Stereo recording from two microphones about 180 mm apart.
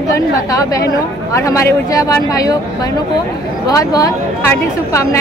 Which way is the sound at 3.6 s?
20° left (ahead or behind).